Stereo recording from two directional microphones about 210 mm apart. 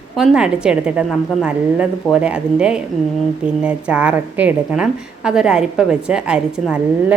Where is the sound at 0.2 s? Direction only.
5° right (ahead or behind).